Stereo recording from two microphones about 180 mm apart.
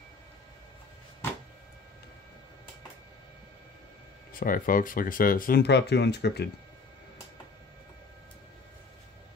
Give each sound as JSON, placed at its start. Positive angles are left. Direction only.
{"t": 4.3, "sound": "speech", "side_deg": 50}